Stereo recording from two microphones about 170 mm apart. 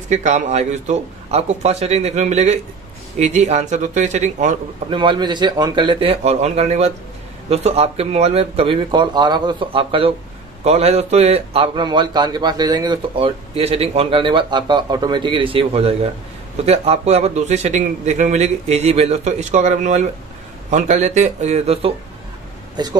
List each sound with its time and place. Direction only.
0.1 s a man's voice: 45° right (ahead or behind)
4.8 s a man's voice: 30° right (ahead or behind)